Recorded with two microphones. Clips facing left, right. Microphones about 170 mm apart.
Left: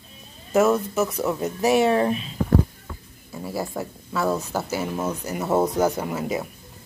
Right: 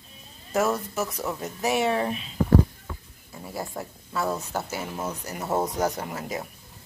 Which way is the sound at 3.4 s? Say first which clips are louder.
Left 5 dB; 90° left.